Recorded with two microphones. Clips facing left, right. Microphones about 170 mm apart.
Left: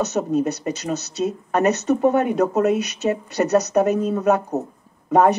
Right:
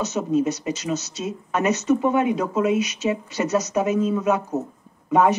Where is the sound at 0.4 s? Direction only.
60° left (ahead or behind).